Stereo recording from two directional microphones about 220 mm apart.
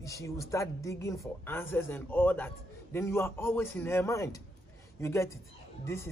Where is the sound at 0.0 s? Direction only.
15° left (ahead or behind).